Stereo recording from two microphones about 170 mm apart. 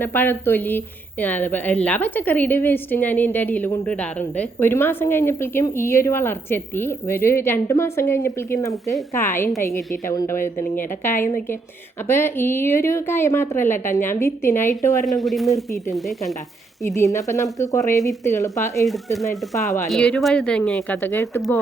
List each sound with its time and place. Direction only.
0.0 s a woman's voice: 10° left (ahead or behind)
15.0 s speech: centre (ahead or behind)
16.8 s a woman's voice: 15° left (ahead or behind)
19.9 s speech: 5° left (ahead or behind)